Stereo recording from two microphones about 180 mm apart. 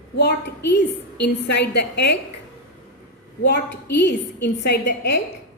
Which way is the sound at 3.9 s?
70° left (ahead or behind).